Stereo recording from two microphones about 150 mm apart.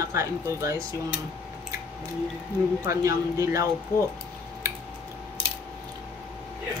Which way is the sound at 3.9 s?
20° left (ahead or behind).